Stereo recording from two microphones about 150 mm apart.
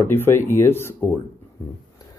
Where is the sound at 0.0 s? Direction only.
15° left (ahead or behind).